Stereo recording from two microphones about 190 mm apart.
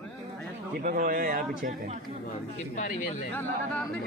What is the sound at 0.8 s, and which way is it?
A man's voice, 50° right (ahead or behind).